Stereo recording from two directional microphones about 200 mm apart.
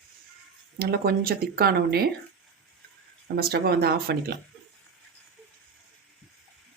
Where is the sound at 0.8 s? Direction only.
50° right (ahead or behind).